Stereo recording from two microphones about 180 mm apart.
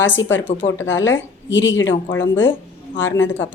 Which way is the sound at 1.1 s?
90° left.